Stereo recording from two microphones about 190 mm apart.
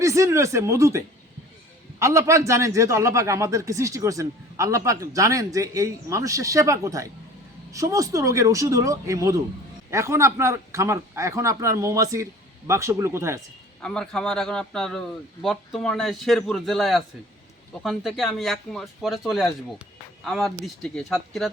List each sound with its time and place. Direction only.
0.0 s speech: 15° right (ahead or behind)
13.8 s speech: 5° left (ahead or behind)